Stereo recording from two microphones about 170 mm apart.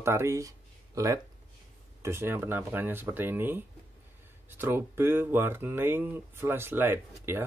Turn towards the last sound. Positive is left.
turn(degrees=-15)  # may be behind; listen again after turning